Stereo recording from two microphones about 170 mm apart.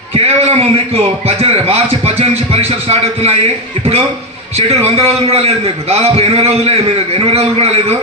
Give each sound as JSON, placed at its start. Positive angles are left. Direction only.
{"t": 0.1, "sound": "a man's voice", "side_deg": -35}
{"t": 4.5, "sound": "a man's voice", "side_deg": -35}